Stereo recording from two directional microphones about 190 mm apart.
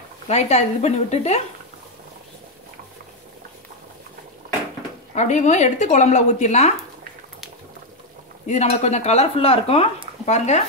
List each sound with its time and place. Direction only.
0.3 s speech: 35° left (ahead or behind)
5.1 s speech: 40° left (ahead or behind)
8.5 s speech: 35° left (ahead or behind)